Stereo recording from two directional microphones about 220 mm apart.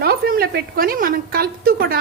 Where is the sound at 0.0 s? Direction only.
45° right (ahead or behind).